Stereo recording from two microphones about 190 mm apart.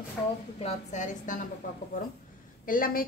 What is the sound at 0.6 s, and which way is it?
Speech, 35° left (ahead or behind).